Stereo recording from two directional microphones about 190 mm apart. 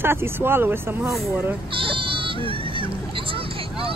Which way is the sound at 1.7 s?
25° right (ahead or behind).